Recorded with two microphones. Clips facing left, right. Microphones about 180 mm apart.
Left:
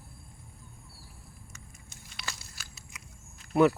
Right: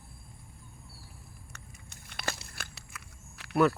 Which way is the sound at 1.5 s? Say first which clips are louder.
Even; 60° right (ahead or behind).